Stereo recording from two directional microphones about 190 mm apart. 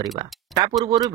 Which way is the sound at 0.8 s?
20° right (ahead or behind).